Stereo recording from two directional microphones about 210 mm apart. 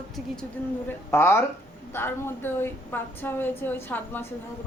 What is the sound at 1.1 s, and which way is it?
Speech, 10° left (ahead or behind).